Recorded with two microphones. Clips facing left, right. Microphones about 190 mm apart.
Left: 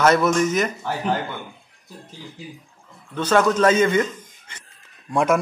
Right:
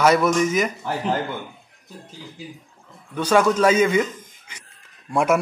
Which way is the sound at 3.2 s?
10° right (ahead or behind).